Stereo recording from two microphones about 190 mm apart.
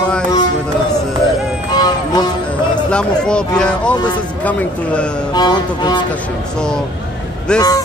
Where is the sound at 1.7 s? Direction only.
20° left (ahead or behind).